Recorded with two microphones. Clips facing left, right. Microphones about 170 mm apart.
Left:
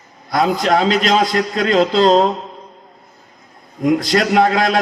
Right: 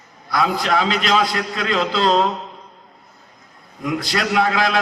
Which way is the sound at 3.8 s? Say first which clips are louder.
Left 7 dB; 40° left (ahead or behind).